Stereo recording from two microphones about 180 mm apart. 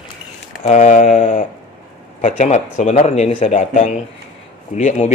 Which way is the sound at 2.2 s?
45° left (ahead or behind).